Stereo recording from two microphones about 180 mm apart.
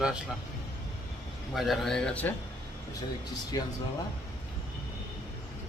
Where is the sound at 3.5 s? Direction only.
20° left (ahead or behind).